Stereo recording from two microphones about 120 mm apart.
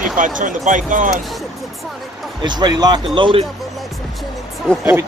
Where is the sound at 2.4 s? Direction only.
35° right (ahead or behind).